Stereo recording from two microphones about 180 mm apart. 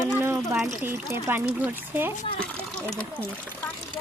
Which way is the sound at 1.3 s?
10° right (ahead or behind).